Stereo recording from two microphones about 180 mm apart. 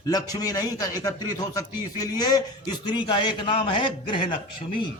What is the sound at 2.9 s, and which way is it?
A man's voice, 25° left (ahead or behind).